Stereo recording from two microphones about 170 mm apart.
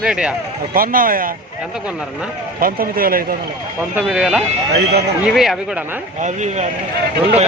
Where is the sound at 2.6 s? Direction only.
60° right (ahead or behind).